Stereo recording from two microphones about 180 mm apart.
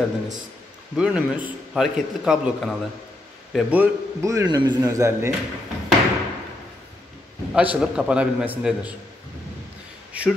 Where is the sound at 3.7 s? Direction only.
15° right (ahead or behind).